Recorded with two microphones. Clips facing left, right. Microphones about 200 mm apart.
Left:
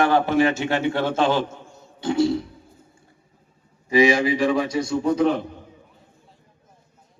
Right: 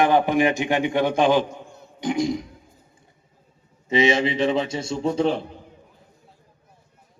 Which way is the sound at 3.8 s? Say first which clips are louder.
Left 2 dB; 25° right (ahead or behind).